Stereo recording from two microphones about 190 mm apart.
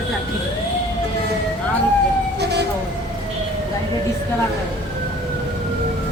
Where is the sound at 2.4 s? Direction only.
60° right (ahead or behind).